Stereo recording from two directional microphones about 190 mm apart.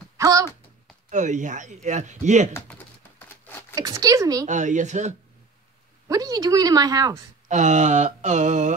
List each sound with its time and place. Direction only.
0.2 s a sound: 15° right (ahead or behind)
1.1 s speech: 40° right (ahead or behind)
2.5 s a sound: 10° left (ahead or behind)
3.7 s speech: 20° right (ahead or behind)
4.5 s speech: 40° right (ahead or behind)
6.0 s a woman's voice: 20° right (ahead or behind)
7.4 s speech: 40° right (ahead or behind)